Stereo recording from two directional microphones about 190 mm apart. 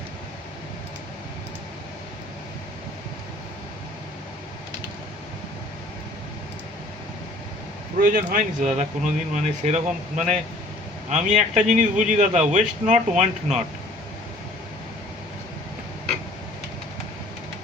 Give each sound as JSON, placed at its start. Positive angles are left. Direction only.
{"t": 8.0, "sound": "a man's voice", "side_deg": -45}